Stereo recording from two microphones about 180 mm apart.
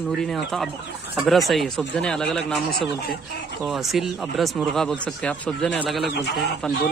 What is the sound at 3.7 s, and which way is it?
A man's voice, centre (ahead or behind).